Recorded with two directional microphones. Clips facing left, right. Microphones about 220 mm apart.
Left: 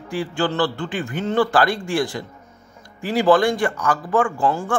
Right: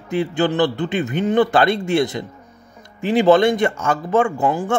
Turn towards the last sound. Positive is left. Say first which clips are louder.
# right 2 dB
turn(degrees=-20)  # may be behind; listen again after turning